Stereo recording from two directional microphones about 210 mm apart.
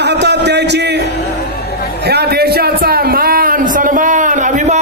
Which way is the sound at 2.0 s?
50° right (ahead or behind).